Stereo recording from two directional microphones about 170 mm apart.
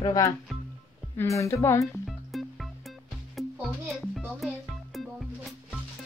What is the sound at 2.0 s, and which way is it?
Music, centre (ahead or behind).